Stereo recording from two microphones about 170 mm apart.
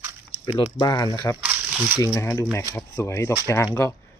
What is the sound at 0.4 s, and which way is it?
Speech, 25° left (ahead or behind).